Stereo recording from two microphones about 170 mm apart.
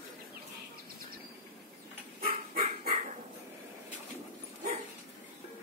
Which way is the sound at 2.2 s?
60° right (ahead or behind).